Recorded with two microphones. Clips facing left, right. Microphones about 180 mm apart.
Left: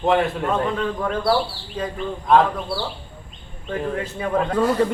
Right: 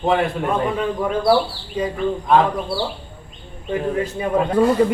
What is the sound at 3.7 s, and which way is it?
Speech, 15° right (ahead or behind).